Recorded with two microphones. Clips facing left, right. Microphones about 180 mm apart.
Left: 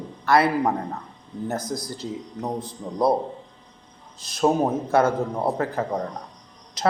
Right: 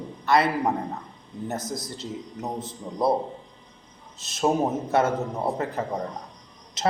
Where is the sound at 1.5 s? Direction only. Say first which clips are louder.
Left 2 dB; 25° right (ahead or behind).